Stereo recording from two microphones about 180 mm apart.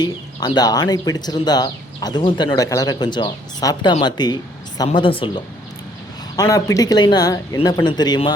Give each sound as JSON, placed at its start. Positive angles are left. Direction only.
{"t": 0.0, "sound": "speech", "side_deg": 25}